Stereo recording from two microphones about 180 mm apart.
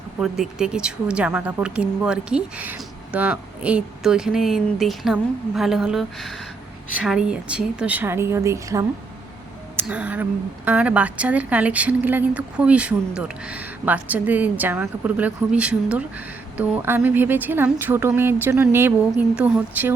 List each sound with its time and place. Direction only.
0.2 s a woman's voice: 5° right (ahead or behind)